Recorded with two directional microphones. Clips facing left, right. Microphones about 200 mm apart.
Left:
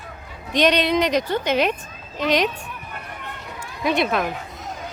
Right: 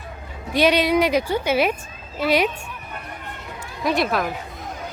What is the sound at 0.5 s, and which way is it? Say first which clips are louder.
A woman's voice: right 1 dB; 10° right (ahead or behind).